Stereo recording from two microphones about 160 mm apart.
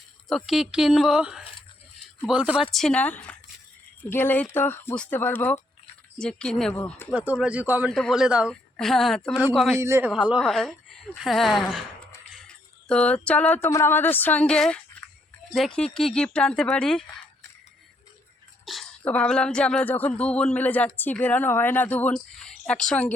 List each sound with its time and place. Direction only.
0.3 s speech: centre (ahead or behind)
2.7 s speech: 5° left (ahead or behind)
7.1 s a man's voice: 10° right (ahead or behind)
7.9 s speech: centre (ahead or behind)
9.8 s a man's voice: 15° right (ahead or behind)
10.1 s speech: 5° right (ahead or behind)
18.6 s speech: centre (ahead or behind)